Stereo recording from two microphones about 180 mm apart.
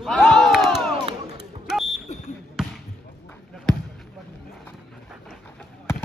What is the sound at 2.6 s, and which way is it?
Basketball bounce, 5° right (ahead or behind).